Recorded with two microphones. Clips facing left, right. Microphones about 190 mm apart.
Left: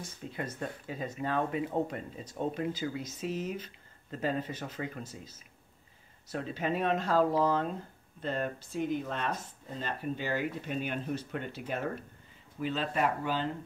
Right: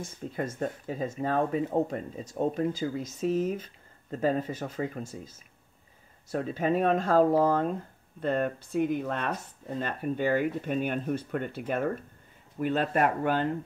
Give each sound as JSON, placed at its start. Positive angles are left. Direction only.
{"t": 0.0, "sound": "speech", "side_deg": -45}
{"t": 6.3, "sound": "speech", "side_deg": -45}